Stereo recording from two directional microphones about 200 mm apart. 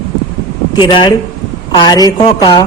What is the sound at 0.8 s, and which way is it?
Speech, 25° left (ahead or behind).